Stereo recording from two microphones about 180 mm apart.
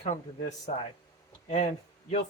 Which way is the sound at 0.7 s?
35° left (ahead or behind).